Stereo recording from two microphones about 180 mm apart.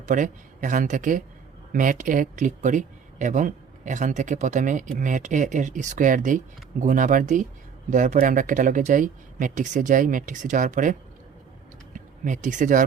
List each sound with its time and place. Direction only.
0.0 s speech: 45° right (ahead or behind)
11.9 s speech: 45° right (ahead or behind)